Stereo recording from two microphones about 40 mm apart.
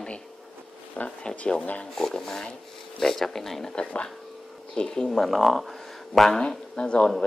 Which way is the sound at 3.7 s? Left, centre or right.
Left.